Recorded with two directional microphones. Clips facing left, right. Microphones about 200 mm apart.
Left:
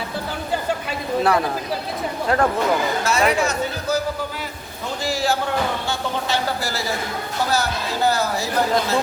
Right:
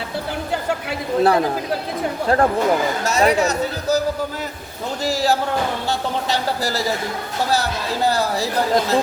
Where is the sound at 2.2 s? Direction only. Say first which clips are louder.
Right 2 dB; 35° right (ahead or behind).